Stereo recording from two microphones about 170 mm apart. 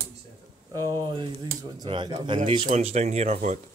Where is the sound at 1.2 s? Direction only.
25° right (ahead or behind).